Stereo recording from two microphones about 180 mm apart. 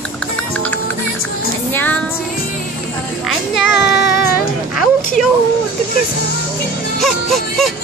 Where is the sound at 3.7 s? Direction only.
65° left (ahead or behind).